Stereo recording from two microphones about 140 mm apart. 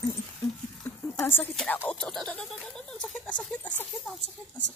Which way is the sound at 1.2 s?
15° left (ahead or behind).